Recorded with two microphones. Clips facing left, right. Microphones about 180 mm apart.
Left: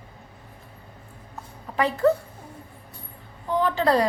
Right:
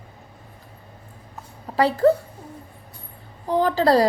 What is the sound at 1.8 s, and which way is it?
Speech, 35° right (ahead or behind).